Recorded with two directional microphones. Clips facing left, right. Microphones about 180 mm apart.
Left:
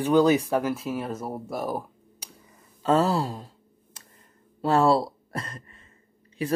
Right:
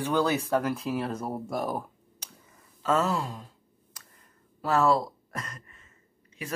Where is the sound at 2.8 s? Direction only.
30° left (ahead or behind).